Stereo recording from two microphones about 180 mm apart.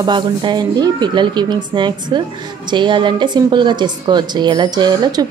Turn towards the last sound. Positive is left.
turn(degrees=-20)  # may be behind; listen again after turning